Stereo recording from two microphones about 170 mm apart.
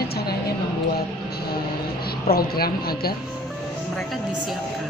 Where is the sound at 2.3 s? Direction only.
65° left (ahead or behind).